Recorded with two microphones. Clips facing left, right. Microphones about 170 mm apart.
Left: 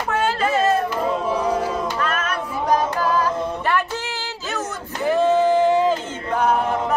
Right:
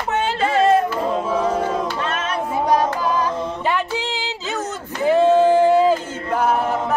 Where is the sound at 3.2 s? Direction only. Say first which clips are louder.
Even; 15° right (ahead or behind).